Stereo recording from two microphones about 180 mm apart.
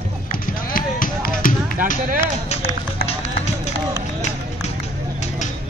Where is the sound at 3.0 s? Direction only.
35° left (ahead or behind).